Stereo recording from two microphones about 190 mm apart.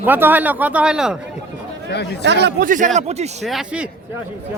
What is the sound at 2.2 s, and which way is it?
Speech, 65° right (ahead or behind).